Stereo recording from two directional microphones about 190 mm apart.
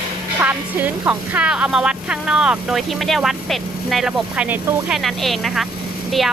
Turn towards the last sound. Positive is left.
turn(degrees=0)  # may be behind; listen again after turning